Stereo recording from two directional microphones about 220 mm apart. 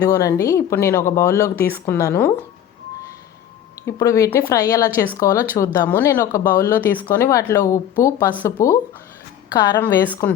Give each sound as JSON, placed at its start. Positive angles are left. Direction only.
{"t": 0.0, "sound": "speech", "side_deg": 15}
{"t": 3.8, "sound": "a woman's voice", "side_deg": 15}
{"t": 9.8, "sound": "speech", "side_deg": 10}